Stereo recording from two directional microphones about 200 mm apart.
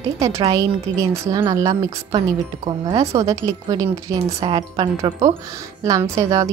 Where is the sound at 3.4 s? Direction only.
15° right (ahead or behind).